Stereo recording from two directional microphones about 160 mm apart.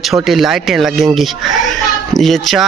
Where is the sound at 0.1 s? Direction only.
Centre (ahead or behind).